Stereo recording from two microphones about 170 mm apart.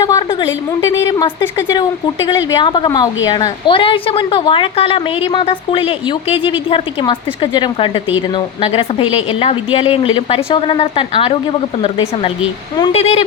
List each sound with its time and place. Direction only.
0.0 s a sound: 20° left (ahead or behind)
0.8 s a woman's voice: 20° left (ahead or behind)
12.9 s a woman's voice: 35° left (ahead or behind)